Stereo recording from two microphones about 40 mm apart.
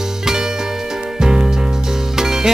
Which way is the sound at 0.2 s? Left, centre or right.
Centre.